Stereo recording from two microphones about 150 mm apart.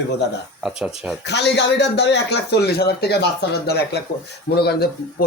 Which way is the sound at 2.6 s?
90° left.